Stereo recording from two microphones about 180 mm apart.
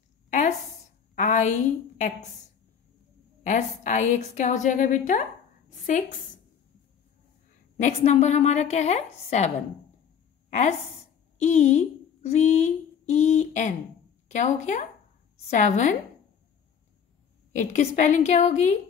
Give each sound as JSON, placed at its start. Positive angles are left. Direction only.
{"t": 0.3, "sound": "a sound", "side_deg": 45}
{"t": 3.4, "sound": "a woman's voice", "side_deg": 45}
{"t": 7.7, "sound": "a woman's voice", "side_deg": 40}
{"t": 11.3, "sound": "a woman's voice", "side_deg": 35}
{"t": 17.5, "sound": "a woman's voice", "side_deg": 40}